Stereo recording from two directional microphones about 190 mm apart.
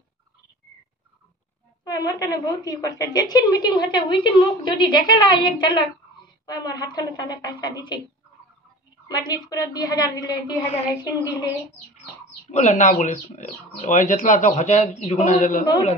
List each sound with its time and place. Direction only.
1.9 s a woman's voice: 20° left (ahead or behind)
9.0 s a woman's voice: 20° left (ahead or behind)
12.4 s speech: 40° left (ahead or behind)